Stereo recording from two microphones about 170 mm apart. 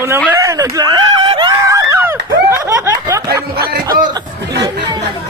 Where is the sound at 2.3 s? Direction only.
20° right (ahead or behind).